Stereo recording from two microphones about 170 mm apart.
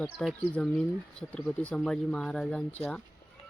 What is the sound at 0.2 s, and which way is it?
Speech, 5° left (ahead or behind).